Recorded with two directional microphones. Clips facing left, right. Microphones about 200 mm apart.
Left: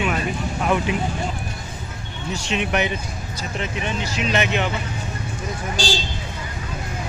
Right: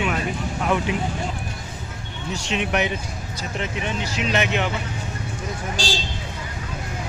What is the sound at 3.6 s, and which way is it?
Speech, 15° right (ahead or behind).